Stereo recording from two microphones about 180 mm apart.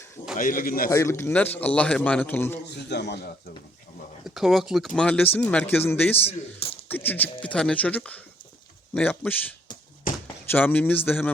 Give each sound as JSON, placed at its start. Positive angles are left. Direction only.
{"t": 0.3, "sound": "speech", "side_deg": 50}
{"t": 0.9, "sound": "a man's voice", "side_deg": 15}
{"t": 2.6, "sound": "speech", "side_deg": 70}
{"t": 4.4, "sound": "a man's voice", "side_deg": 0}
{"t": 6.2, "sound": "speech", "side_deg": 35}
{"t": 6.8, "sound": "a man's voice", "side_deg": 10}
{"t": 10.1, "sound": "chop", "side_deg": 50}
{"t": 10.5, "sound": "a man's voice", "side_deg": 10}